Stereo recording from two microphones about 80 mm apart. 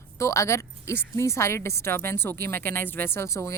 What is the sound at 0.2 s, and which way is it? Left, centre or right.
Speech, left.